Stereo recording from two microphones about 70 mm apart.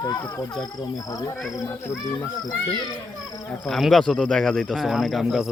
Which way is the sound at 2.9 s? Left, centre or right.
Left.